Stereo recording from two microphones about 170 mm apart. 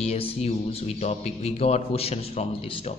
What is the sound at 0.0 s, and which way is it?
A woman's voice, 35° left (ahead or behind).